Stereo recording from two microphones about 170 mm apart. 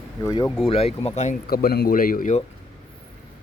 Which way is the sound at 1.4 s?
65° left (ahead or behind).